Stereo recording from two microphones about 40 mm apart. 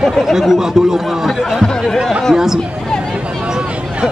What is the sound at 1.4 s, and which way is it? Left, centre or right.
Speech, centre.